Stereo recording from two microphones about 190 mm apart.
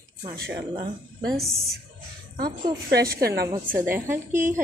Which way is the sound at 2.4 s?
50° right (ahead or behind).